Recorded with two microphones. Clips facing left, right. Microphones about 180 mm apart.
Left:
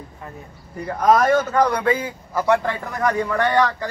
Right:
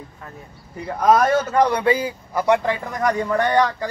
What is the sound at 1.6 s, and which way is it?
Speech, 25° right (ahead or behind).